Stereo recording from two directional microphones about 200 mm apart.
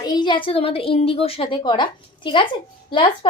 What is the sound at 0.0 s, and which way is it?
A woman's voice, 20° left (ahead or behind).